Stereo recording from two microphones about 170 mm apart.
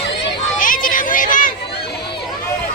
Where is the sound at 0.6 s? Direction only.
50° left (ahead or behind).